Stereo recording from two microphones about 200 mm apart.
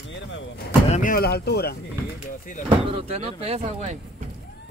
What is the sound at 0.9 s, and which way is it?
Speech, 40° left (ahead or behind).